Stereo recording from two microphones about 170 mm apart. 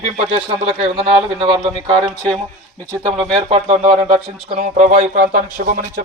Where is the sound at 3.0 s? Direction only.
30° right (ahead or behind).